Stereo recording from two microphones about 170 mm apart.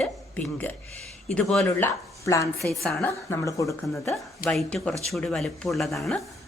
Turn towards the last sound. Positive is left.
turn(degrees=0)  # may be behind; listen again after turning